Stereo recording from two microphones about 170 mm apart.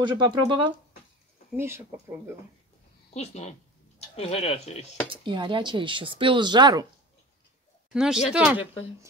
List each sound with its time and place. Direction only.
0.0 s speech: 25° right (ahead or behind)
1.6 s speech: 15° right (ahead or behind)
3.1 s speech: 40° left (ahead or behind)
5.1 s speech: 30° right (ahead or behind)
7.9 s speech: 5° right (ahead or behind)